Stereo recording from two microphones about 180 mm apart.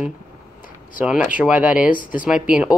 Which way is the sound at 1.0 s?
5° right (ahead or behind).